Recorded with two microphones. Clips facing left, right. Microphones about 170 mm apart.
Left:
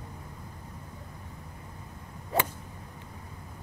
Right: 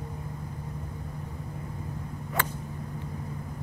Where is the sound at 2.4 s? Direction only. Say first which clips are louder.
Left 3 dB; 30° left (ahead or behind).